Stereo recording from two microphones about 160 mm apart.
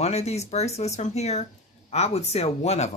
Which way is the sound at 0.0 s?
40° left (ahead or behind).